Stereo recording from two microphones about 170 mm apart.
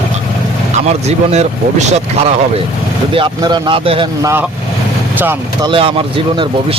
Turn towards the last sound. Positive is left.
turn(degrees=-30)  # may be behind; listen again after turning